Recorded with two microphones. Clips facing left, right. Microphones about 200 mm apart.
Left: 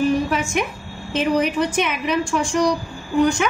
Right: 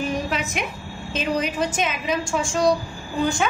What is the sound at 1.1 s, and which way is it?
A woman's voice, 60° left (ahead or behind).